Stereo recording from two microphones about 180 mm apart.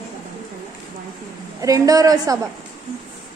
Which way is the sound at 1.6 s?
20° right (ahead or behind).